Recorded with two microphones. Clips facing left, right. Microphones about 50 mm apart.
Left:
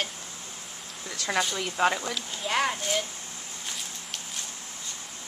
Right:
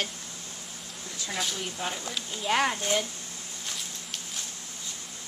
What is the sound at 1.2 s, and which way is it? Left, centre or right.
Speech, left.